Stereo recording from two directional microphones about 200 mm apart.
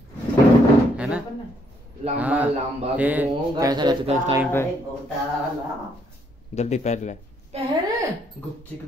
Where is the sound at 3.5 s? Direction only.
20° right (ahead or behind).